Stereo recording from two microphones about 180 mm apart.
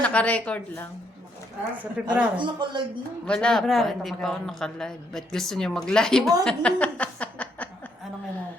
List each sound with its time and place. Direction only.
0.0 s speech: 10° left (ahead or behind)
1.8 s a woman's voice: 5° right (ahead or behind)
2.4 s speech: 25° right (ahead or behind)
3.2 s speech: 5° left (ahead or behind)
6.4 s a sound: 5° left (ahead or behind)